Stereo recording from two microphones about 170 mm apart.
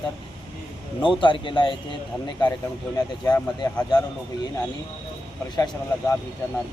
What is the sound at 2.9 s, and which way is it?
Speech, 25° left (ahead or behind).